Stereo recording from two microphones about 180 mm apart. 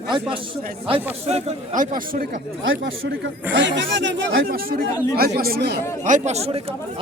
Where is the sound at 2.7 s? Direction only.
90° right.